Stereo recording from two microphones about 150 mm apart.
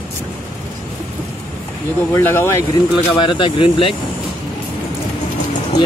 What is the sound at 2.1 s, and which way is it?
Speech, 15° left (ahead or behind).